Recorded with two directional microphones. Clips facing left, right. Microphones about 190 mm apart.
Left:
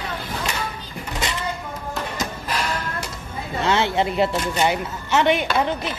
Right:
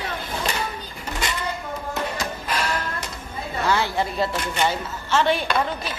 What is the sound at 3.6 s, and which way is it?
A woman's voice, 25° left (ahead or behind).